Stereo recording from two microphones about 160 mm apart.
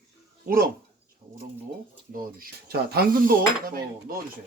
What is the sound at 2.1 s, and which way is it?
Speech, 65° right (ahead or behind).